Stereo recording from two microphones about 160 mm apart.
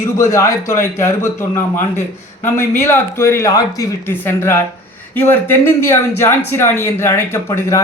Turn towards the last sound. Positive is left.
turn(degrees=15)  # may be behind; listen again after turning